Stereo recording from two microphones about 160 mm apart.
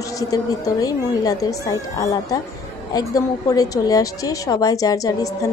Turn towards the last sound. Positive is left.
turn(degrees=20)  # may be behind; listen again after turning